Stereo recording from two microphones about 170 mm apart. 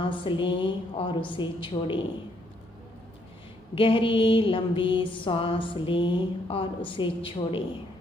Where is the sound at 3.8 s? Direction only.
30° left (ahead or behind).